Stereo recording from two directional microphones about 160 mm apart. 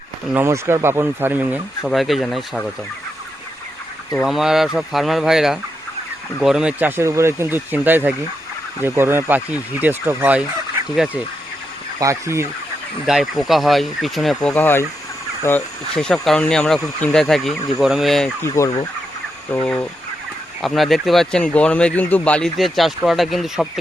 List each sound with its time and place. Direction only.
0.3 s speech: 15° right (ahead or behind); by 2.6 s centre (ahead or behind)
4.2 s speech: centre (ahead or behind)
11.9 s speech: 20° right (ahead or behind)
13.1 s speech: centre (ahead or behind)
18.4 s speech: 20° left (ahead or behind)
19.5 s speech: 10° left (ahead or behind)